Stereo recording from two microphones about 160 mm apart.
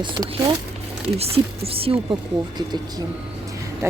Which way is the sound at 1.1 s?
40° right (ahead or behind).